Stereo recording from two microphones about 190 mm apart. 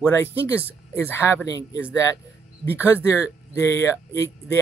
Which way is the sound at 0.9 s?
15° left (ahead or behind).